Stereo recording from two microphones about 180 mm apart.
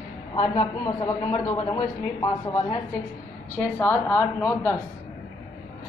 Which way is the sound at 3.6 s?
10° left (ahead or behind).